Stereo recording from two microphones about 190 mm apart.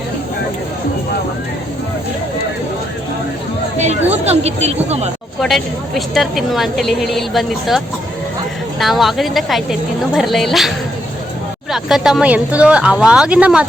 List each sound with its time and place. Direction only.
3.8 s speech: 35° right (ahead or behind)
5.4 s a woman's voice: centre (ahead or behind)
8.8 s a woman's voice: centre (ahead or behind)
11.7 s a woman's voice: centre (ahead or behind)